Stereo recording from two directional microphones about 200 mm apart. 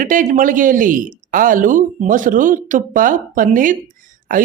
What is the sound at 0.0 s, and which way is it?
Speech, 40° right (ahead or behind).